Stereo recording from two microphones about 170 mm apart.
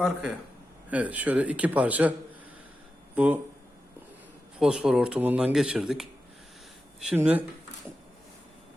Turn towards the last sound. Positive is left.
turn(degrees=-10)  # may be behind; listen again after turning